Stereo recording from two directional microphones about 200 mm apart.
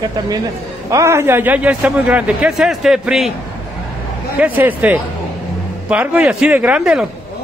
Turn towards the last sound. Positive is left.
turn(degrees=-5)  # may be behind; listen again after turning